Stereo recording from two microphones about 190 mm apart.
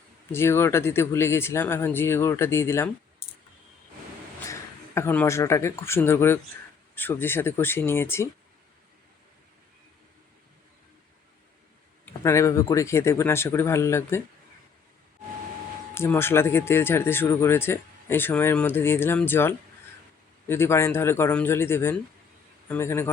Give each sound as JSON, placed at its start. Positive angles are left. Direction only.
{"t": 0.3, "sound": "speech", "side_deg": 15}
{"t": 3.2, "sound": "clicking", "side_deg": 50}
{"t": 4.4, "sound": "speech", "side_deg": 15}
{"t": 12.0, "sound": "speech", "side_deg": 15}
{"t": 16.0, "sound": "speech", "side_deg": 10}